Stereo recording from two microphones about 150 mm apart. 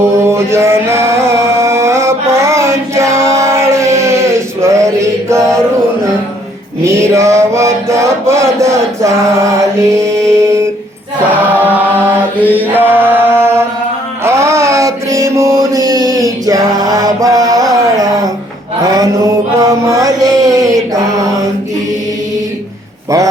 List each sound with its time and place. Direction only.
0.0 s music: 15° right (ahead or behind)
6.8 s mantra: 20° right (ahead or behind)
10.0 s mantra: 20° right (ahead or behind)
12.4 s chant: 10° right (ahead or behind)
14.3 s music: 20° right (ahead or behind)
16.2 s a sound: 25° right (ahead or behind)
18.8 s male singing: 25° right (ahead or behind)
19.5 s mantra: 20° right (ahead or behind)